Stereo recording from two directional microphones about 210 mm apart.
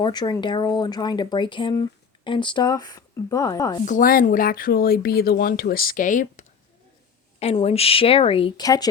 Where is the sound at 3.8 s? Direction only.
40° left (ahead or behind).